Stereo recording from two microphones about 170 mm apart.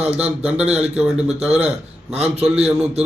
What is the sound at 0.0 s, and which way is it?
A man's voice, 10° right (ahead or behind).